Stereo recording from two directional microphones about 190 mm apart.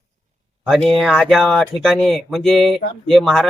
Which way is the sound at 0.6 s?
Centre (ahead or behind).